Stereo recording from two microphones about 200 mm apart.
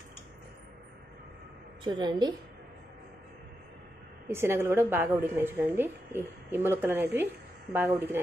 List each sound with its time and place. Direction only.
1.9 s a woman's voice: 20° right (ahead or behind)
4.3 s a woman's voice: 10° right (ahead or behind)